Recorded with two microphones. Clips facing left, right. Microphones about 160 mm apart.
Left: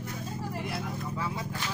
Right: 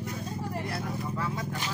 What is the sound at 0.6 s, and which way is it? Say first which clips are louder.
Speech: right 1 dB; 5° left (ahead or behind).